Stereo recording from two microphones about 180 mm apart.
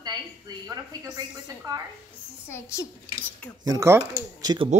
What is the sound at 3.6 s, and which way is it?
Speech, 20° right (ahead or behind).